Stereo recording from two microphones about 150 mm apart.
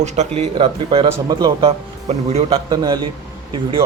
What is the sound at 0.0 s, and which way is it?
Speech, 45° right (ahead or behind).